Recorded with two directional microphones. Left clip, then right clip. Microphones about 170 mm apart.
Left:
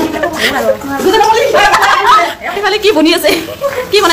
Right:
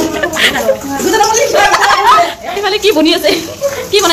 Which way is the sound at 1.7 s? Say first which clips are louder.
Even; 15° right (ahead or behind).